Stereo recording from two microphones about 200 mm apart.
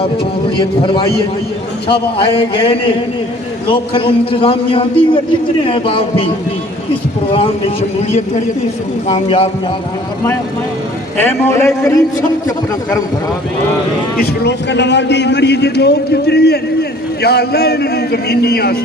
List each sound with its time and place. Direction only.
0.5 s a man's voice: 25° left (ahead or behind)
11.2 s a man's voice: 10° left (ahead or behind)
14.2 s a man's voice: 55° left (ahead or behind)